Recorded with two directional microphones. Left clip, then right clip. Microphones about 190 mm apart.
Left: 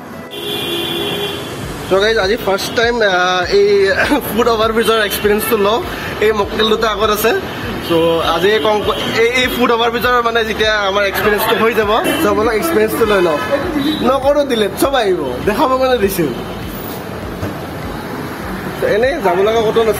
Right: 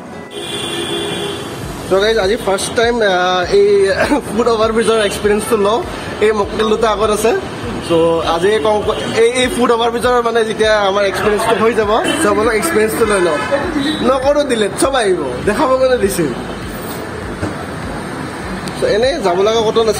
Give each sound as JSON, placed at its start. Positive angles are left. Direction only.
{"t": 1.9, "sound": "a man's voice", "side_deg": -5}
{"t": 18.9, "sound": "a man's voice", "side_deg": -10}